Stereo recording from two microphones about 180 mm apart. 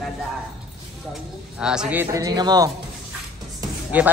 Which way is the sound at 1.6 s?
5° right (ahead or behind).